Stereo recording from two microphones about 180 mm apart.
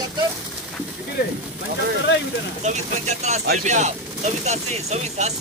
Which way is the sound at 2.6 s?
40° right (ahead or behind).